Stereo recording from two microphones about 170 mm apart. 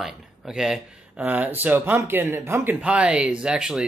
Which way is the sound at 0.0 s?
5° right (ahead or behind).